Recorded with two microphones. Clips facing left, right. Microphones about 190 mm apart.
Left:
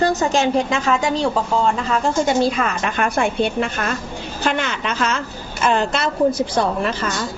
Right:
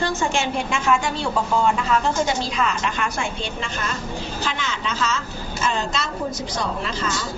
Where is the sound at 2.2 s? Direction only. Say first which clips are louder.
Left 6 dB; 55° left (ahead or behind).